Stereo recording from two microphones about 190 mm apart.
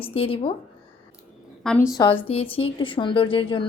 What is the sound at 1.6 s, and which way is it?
Speech, centre (ahead or behind).